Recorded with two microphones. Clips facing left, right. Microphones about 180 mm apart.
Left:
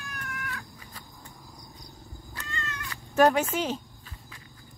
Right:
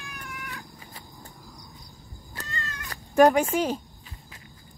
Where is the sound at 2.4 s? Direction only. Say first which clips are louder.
Right 1 dB; 35° right (ahead or behind).